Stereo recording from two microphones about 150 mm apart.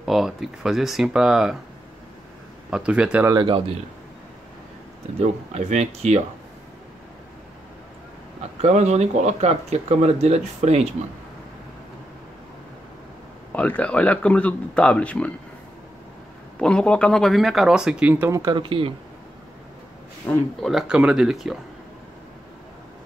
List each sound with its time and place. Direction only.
0.0 s speech: centre (ahead or behind)
2.7 s speech: 5° right (ahead or behind)
3.3 s speech: 30° right (ahead or behind)
5.2 s speech: 50° right (ahead or behind)
8.5 s speech: 50° right (ahead or behind)
13.5 s speech: 10° left (ahead or behind)
16.5 s speech: 5° left (ahead or behind)
18.3 s speech: 25° right (ahead or behind)
20.2 s speech: centre (ahead or behind)